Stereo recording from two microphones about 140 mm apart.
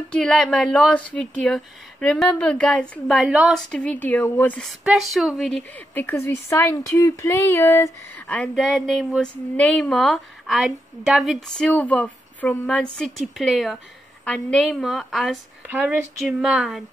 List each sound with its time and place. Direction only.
0.1 s a woman's voice: 5° left (ahead or behind)
5.6 s speech: 15° left (ahead or behind)
8.3 s a woman's voice: 5° left (ahead or behind)
15.6 s speech: 10° right (ahead or behind)